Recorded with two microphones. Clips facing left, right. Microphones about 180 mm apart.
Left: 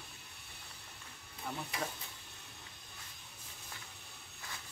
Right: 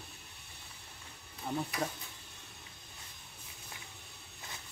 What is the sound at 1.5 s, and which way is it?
Speech, 25° right (ahead or behind).